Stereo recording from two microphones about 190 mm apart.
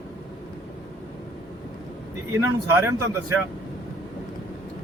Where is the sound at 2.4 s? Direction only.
15° right (ahead or behind).